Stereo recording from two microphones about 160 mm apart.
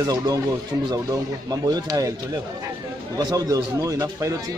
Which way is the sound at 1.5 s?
25° right (ahead or behind).